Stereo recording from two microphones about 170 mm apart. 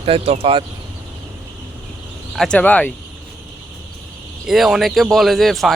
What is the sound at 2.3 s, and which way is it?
Speech, 5° left (ahead or behind).